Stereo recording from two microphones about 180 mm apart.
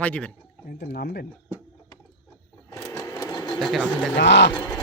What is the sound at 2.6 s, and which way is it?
Sewing machine, 15° left (ahead or behind).